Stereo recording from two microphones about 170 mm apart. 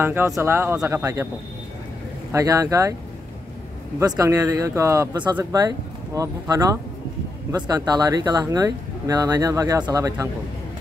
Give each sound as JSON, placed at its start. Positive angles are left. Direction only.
{"t": 0.0, "sound": "speech", "side_deg": -15}
{"t": 2.3, "sound": "speech", "side_deg": -20}
{"t": 4.0, "sound": "speech", "side_deg": -20}